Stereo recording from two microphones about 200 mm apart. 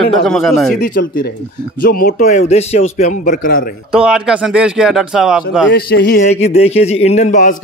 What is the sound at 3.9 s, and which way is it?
Speech, 5° right (ahead or behind).